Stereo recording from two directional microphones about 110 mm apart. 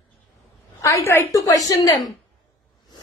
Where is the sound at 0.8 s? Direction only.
30° left (ahead or behind).